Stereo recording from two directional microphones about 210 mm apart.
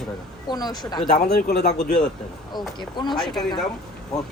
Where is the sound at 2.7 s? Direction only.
20° left (ahead or behind).